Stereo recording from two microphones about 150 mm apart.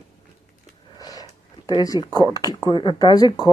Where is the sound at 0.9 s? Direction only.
25° left (ahead or behind).